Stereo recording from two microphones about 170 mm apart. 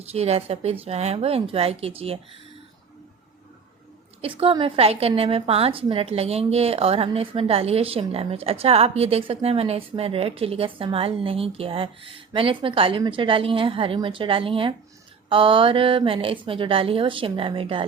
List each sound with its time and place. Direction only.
0.1 s a woman's voice: 35° right (ahead or behind)
4.2 s a woman's voice: 35° right (ahead or behind)